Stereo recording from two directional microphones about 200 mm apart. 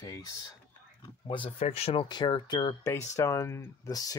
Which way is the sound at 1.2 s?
30° left (ahead or behind).